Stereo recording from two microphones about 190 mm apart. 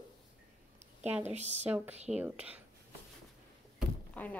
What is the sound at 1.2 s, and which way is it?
Speech, 35° right (ahead or behind).